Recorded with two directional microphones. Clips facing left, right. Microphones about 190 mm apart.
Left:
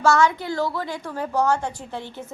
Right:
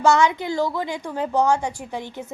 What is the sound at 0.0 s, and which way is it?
A woman's voice, 20° right (ahead or behind).